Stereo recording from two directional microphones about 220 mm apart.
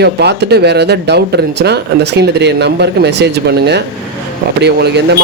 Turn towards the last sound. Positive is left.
turn(degrees=-50)  # may be behind; listen again after turning